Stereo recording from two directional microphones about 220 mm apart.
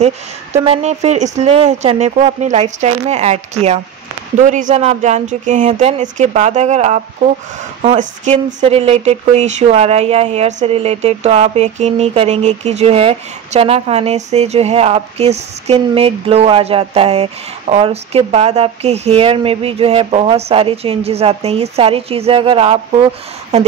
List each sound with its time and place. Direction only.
0.8 s speech: 30° right (ahead or behind)
4.4 s speech: 35° right (ahead or behind)